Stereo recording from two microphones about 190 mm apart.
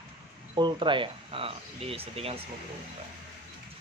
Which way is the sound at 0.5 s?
25° right (ahead or behind).